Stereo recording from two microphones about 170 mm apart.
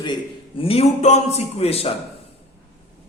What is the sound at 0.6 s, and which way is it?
A man's voice, 35° left (ahead or behind).